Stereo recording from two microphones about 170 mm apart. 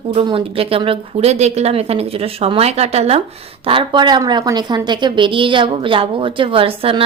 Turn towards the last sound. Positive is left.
turn(degrees=-35)  # may be behind; listen again after turning